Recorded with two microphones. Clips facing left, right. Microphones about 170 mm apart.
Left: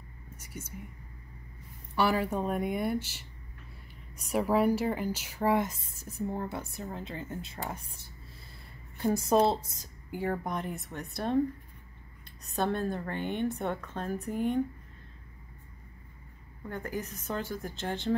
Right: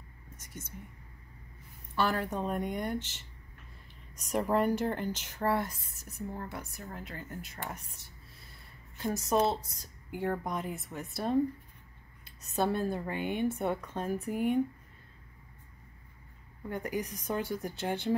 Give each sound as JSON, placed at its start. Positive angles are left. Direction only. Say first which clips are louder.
{"t": 0.4, "sound": "whispering", "louder": "left 3 dB", "side_deg": 10}
{"t": 2.0, "sound": "speech", "louder": "left 3 dB", "side_deg": 10}
{"t": 4.3, "sound": "speech", "louder": "left 2 dB", "side_deg": 5}
{"t": 10.1, "sound": "speech", "louder": "left 1 dB", "side_deg": 0}
{"t": 12.5, "sound": "a woman's voice", "louder": "even", "side_deg": -10}
{"t": 16.6, "sound": "a woman's voice", "louder": "right 2 dB", "side_deg": -15}